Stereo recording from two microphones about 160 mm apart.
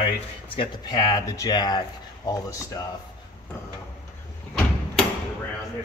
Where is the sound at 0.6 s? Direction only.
25° left (ahead or behind).